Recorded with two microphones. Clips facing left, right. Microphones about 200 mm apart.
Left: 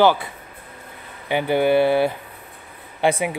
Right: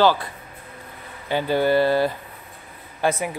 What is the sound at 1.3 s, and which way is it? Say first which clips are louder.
Speech: left 2 dB; 20° left (ahead or behind).